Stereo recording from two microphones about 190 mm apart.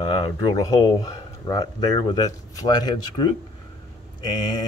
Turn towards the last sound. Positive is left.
turn(degrees=20)  # may be behind; listen again after turning